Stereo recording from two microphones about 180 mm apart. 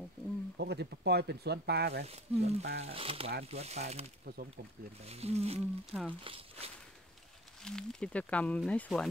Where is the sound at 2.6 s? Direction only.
80° right.